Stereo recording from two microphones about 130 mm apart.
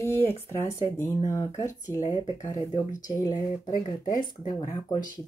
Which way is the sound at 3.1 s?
25° left (ahead or behind).